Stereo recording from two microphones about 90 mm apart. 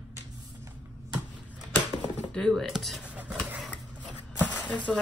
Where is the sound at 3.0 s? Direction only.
10° right (ahead or behind).